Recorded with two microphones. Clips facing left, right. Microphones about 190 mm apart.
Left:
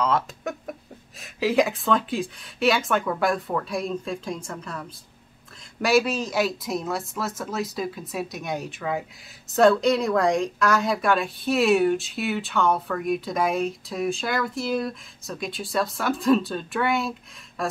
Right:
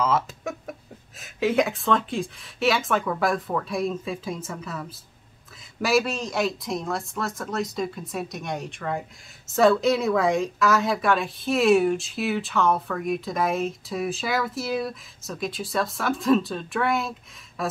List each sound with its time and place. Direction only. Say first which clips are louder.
0.0 s chicken: even; centre (ahead or behind)
1.2 s speech: left 1 dB; centre (ahead or behind)